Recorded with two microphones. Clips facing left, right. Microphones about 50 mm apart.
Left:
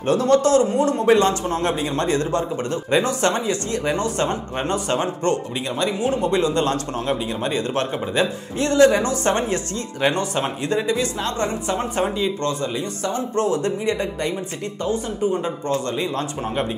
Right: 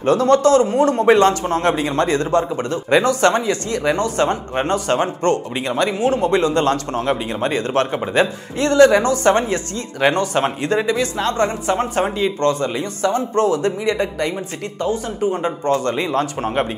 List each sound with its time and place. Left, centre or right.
0.0 s speech: right
4.2 s speech: right
5.9 s speech: right
6.4 s speech: right
14.9 s speech: right
15.6 s speech: right